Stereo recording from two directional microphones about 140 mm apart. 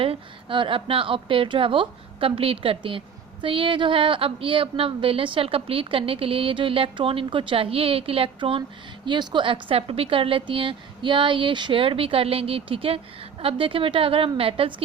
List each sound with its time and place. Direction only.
0.0 s a woman's voice: 40° right (ahead or behind)